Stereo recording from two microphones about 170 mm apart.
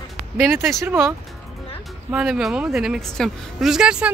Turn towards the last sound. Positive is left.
turn(degrees=-5)  # may be behind; listen again after turning